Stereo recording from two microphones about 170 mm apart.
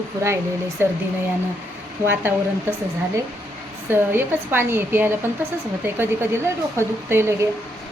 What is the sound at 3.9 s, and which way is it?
Speech, 15° right (ahead or behind).